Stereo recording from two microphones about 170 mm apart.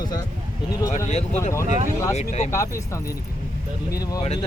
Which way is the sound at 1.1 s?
40° left (ahead or behind).